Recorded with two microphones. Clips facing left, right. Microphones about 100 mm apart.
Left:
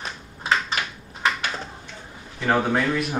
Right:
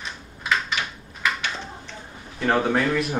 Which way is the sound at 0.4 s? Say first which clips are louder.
Left 1 dB; 30° left (ahead or behind).